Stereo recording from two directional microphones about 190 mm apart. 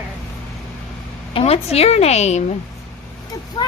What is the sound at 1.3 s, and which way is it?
A woman's voice, 35° left (ahead or behind).